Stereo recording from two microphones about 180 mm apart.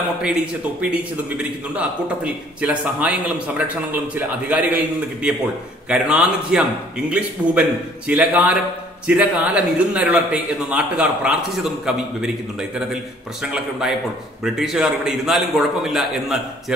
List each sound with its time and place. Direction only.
0.7 s a man's voice: 10° right (ahead or behind)
13.4 s a man's voice: 5° right (ahead or behind)